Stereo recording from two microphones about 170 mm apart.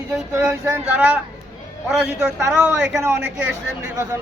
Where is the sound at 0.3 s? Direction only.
15° right (ahead or behind).